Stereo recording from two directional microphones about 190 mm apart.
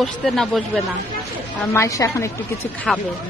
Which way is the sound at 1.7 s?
15° left (ahead or behind).